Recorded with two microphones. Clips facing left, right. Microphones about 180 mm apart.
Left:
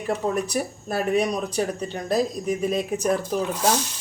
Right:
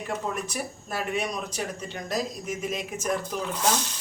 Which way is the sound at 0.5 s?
35° left (ahead or behind).